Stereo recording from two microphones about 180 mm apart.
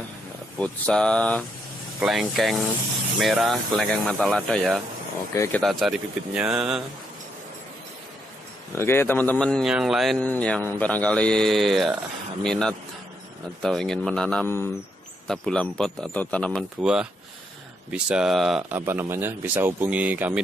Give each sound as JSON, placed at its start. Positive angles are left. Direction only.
{"t": 0.6, "sound": "speech", "side_deg": 5}
{"t": 5.3, "sound": "speech", "side_deg": 15}
{"t": 5.6, "sound": "speech", "side_deg": 0}
{"t": 8.7, "sound": "speech", "side_deg": 15}
{"t": 16.8, "sound": "speech", "side_deg": -5}
{"t": 18.8, "sound": "speech", "side_deg": -10}